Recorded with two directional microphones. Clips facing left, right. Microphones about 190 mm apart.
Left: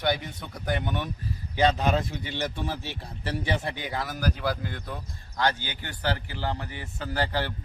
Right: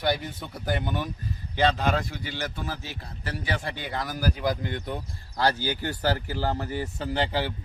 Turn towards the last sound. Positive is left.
turn(degrees=-15)  # may be behind; listen again after turning